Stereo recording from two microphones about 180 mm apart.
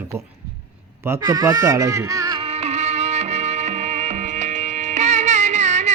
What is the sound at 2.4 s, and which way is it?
Music, 35° right (ahead or behind).